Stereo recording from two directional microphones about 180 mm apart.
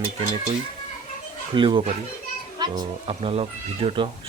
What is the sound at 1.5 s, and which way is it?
Speech, 25° right (ahead or behind).